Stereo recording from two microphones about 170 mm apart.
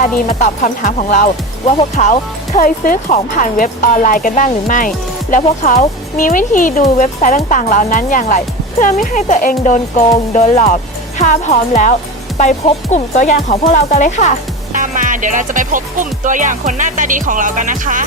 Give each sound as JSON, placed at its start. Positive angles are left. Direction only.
{"t": 0.0, "sound": "speech", "side_deg": 50}
{"t": 14.7, "sound": "speech", "side_deg": -50}